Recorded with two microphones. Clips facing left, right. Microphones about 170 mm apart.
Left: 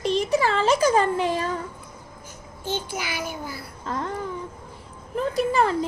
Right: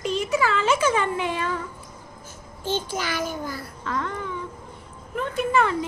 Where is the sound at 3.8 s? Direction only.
35° left (ahead or behind).